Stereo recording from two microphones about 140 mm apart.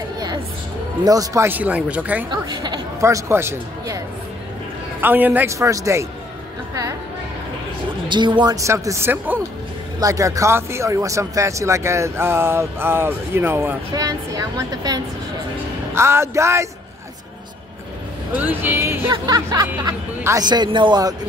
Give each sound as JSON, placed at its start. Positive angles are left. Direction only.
{"t": 1.0, "sound": "speech", "side_deg": -25}
{"t": 2.3, "sound": "speech", "side_deg": -30}
{"t": 5.0, "sound": "speech", "side_deg": -10}
{"t": 8.1, "sound": "speech", "side_deg": -35}
{"t": 8.5, "sound": "speech", "side_deg": -20}
{"t": 13.9, "sound": "speech", "side_deg": -25}
{"t": 18.3, "sound": "speech", "side_deg": -15}
{"t": 19.0, "sound": "speech", "side_deg": -30}